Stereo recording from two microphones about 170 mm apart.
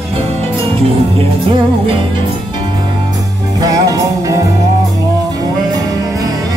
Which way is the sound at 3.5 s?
20° right (ahead or behind).